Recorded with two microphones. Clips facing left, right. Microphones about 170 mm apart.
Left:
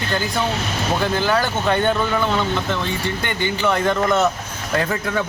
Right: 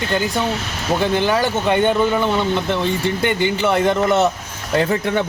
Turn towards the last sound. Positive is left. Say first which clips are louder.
# right 4 dB
turn(degrees=-25)  # may be behind; listen again after turning